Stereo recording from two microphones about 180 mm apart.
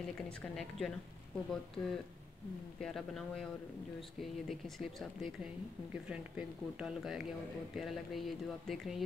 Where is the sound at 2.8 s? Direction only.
Centre (ahead or behind).